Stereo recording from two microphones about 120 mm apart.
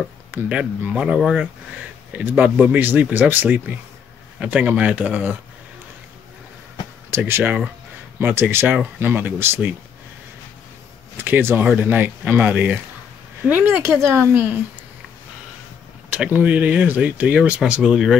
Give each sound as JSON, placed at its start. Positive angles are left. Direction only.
{"t": 0.3, "sound": "speech", "side_deg": -15}
{"t": 7.1, "sound": "speech", "side_deg": -20}
{"t": 11.2, "sound": "speech", "side_deg": -15}
{"t": 16.1, "sound": "speech", "side_deg": -10}